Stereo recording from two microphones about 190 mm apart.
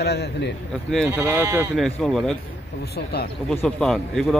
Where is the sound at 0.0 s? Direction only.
60° left (ahead or behind).